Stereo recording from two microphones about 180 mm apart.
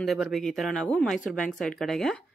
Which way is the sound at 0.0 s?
Centre (ahead or behind).